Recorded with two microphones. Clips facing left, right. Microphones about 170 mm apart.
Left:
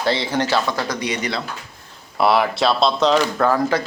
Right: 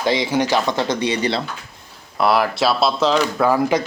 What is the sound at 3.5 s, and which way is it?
Speech, 15° right (ahead or behind).